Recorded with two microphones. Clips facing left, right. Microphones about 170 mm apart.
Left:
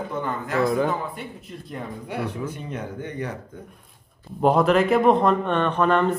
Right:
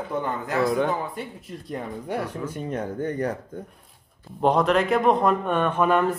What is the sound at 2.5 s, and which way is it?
Speech, 40° right (ahead or behind).